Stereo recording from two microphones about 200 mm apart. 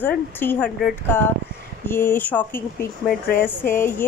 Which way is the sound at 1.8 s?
10° left (ahead or behind).